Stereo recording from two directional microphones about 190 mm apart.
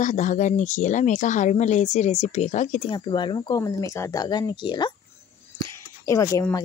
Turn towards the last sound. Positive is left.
turn(degrees=15)  # may be behind; listen again after turning